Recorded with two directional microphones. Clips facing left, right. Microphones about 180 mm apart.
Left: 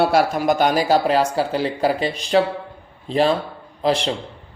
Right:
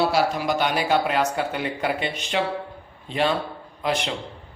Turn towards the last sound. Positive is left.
turn(degrees=30)  # may be behind; listen again after turning